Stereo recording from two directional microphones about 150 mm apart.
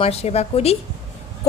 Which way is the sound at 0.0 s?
45° left (ahead or behind).